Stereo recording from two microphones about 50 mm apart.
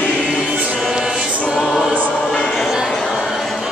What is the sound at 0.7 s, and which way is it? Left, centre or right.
Music, centre.